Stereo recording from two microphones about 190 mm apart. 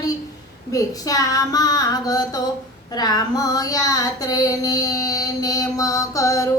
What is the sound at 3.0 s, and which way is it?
Child singing, 20° left (ahead or behind).